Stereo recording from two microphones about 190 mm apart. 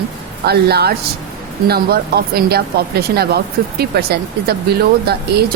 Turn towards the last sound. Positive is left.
turn(degrees=-55)  # may be behind; listen again after turning